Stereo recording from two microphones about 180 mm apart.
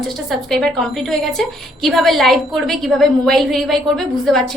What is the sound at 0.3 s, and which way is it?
A woman's voice, centre (ahead or behind).